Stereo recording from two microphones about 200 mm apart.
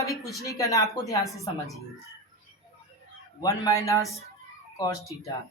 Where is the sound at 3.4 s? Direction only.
15° left (ahead or behind).